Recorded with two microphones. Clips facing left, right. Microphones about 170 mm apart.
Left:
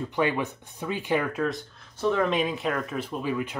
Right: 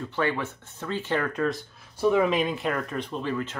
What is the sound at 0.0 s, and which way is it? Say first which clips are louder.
Speech: left 2 dB; 15° left (ahead or behind).